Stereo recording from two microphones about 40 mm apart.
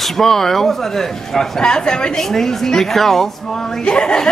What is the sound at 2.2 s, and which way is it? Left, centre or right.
Speech, centre.